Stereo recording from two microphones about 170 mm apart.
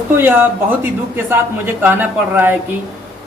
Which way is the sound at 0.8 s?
15° right (ahead or behind).